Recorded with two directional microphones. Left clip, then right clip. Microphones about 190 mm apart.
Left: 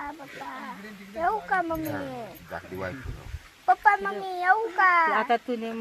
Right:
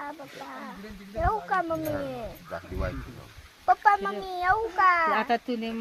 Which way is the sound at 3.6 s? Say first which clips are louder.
Left 1 dB; 35° right (ahead or behind).